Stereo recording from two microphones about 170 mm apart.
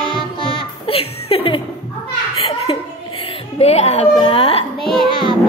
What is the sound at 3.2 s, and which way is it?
Speech, 40° left (ahead or behind).